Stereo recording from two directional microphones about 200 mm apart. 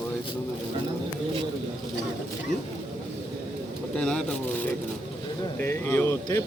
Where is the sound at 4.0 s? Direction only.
5° left (ahead or behind).